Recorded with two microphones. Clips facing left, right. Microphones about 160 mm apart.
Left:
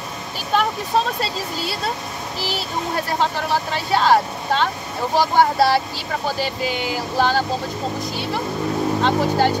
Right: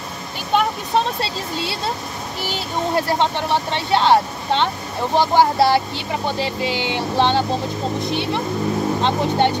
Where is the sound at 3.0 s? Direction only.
25° right (ahead or behind).